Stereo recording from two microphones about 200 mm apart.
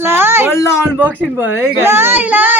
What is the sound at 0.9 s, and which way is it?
A child's voice, 10° right (ahead or behind).